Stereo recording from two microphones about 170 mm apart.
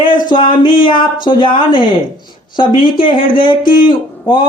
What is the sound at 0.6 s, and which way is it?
Speech, 30° left (ahead or behind).